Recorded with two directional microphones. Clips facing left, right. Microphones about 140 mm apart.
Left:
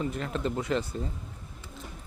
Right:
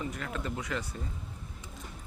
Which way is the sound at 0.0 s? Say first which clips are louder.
Left 6 dB; 30° left (ahead or behind).